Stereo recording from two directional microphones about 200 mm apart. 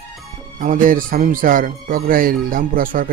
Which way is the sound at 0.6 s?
40° right (ahead or behind).